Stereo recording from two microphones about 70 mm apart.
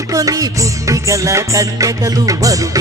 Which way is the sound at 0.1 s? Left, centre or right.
Right.